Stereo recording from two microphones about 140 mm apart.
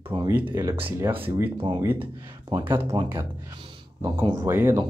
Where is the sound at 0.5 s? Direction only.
20° right (ahead or behind).